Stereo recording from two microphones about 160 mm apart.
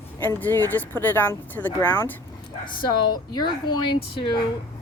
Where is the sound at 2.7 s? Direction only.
25° left (ahead or behind).